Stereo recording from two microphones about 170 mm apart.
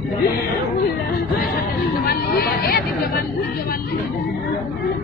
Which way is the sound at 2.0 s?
65° left (ahead or behind).